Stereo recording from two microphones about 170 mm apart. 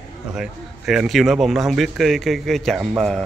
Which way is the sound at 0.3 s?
5° right (ahead or behind).